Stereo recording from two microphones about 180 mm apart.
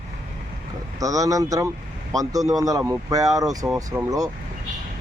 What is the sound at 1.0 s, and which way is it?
Speech, 20° right (ahead or behind).